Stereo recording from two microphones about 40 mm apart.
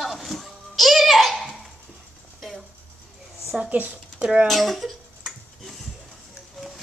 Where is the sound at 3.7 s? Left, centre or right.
Right.